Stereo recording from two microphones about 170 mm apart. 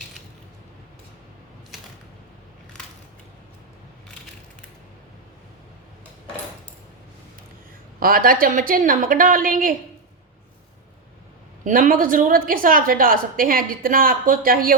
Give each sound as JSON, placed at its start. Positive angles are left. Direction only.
{"t": 7.9, "sound": "a woman's voice", "side_deg": -60}
{"t": 11.6, "sound": "a woman's voice", "side_deg": -50}